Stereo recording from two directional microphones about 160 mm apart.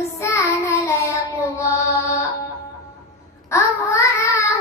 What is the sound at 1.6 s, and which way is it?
Mantra, 20° left (ahead or behind).